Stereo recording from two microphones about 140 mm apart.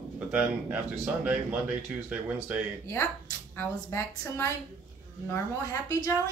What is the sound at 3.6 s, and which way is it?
A woman's voice, 20° left (ahead or behind).